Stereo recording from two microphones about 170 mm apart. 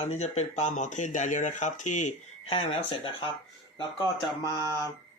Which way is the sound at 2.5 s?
35° left (ahead or behind).